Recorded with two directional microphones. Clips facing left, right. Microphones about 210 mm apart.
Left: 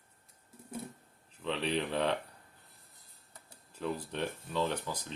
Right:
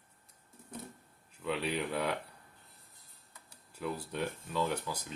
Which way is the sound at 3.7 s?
10° right (ahead or behind).